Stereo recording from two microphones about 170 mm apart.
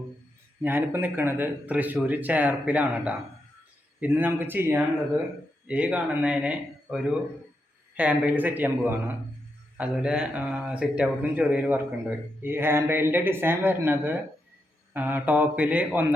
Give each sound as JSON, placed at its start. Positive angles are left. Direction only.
{"t": 0.6, "sound": "speech", "side_deg": -10}